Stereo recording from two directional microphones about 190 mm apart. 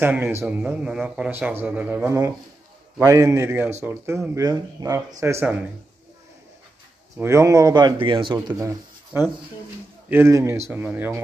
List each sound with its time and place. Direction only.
0.0 s a man's voice: 10° right (ahead or behind)
7.2 s a man's voice: 15° right (ahead or behind)